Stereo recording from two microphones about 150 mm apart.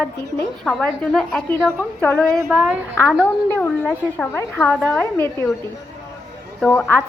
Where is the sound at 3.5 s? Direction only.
10° left (ahead or behind).